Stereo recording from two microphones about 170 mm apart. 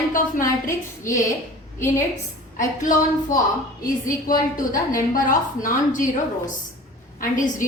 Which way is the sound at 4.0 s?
55° left (ahead or behind).